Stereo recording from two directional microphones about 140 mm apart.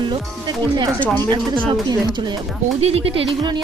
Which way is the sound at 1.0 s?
10° left (ahead or behind).